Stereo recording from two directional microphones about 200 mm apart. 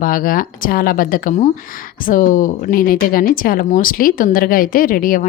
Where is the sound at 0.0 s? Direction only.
45° left (ahead or behind).